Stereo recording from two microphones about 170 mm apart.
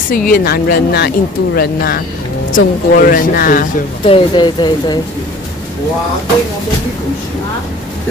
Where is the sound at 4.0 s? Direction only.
30° left (ahead or behind).